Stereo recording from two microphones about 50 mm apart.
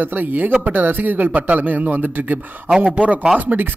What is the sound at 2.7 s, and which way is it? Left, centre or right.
Speech, right.